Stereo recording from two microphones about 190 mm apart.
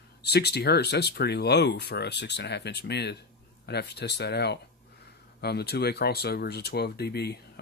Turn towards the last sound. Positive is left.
turn(degrees=55)  # may be behind; listen again after turning